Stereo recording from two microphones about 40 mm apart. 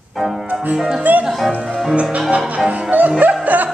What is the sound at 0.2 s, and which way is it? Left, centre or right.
Music, centre.